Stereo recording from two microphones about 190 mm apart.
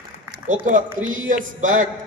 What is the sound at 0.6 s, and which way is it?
A man's voice, 45° right (ahead or behind).